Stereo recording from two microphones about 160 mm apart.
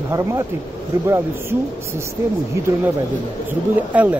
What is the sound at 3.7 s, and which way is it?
Speech, 10° right (ahead or behind).